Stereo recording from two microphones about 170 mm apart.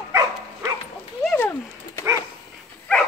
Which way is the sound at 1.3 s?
10° left (ahead or behind).